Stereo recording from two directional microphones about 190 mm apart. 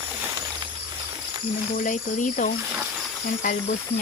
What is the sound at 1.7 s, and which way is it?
Speech, 40° left (ahead or behind).